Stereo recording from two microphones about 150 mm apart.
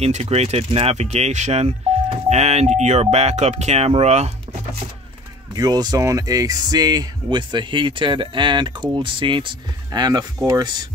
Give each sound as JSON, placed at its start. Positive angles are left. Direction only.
{"t": 0.0, "sound": "speech", "side_deg": -45}
{"t": 5.5, "sound": "speech", "side_deg": -25}